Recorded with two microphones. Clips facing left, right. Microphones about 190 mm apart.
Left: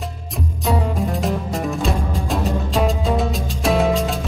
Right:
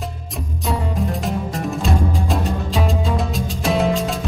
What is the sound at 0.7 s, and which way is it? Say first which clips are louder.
Music: left 2 dB; centre (ahead or behind).